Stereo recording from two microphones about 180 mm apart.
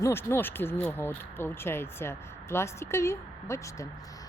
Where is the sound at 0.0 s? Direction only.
15° left (ahead or behind).